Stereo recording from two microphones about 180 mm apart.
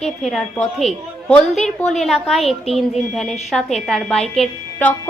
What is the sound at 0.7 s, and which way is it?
A woman's voice, 5° left (ahead or behind).